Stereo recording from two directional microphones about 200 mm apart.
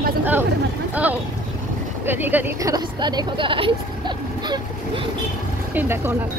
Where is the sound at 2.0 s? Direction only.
10° right (ahead or behind); by 3.7 s 25° right (ahead or behind).